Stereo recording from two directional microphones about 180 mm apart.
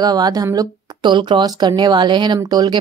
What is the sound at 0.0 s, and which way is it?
Speech, 20° right (ahead or behind).